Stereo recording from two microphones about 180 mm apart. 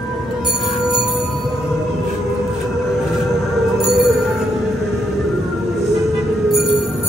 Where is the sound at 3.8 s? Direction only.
Centre (ahead or behind).